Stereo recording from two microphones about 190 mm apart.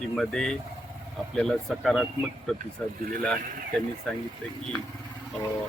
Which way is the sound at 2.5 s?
45° right (ahead or behind).